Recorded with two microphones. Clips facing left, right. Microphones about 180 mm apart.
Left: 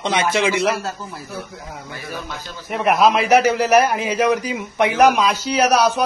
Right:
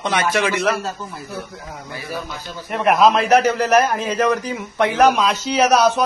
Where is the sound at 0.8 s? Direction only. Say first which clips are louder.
Right 1 dB; centre (ahead or behind).